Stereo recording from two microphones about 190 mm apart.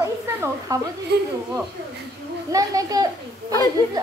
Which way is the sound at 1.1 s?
60° right (ahead or behind).